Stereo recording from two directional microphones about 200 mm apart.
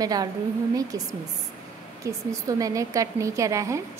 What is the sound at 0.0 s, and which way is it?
A woman's voice, 20° right (ahead or behind).